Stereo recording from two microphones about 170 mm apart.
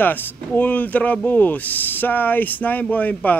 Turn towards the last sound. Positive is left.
turn(degrees=10)  # may be behind; listen again after turning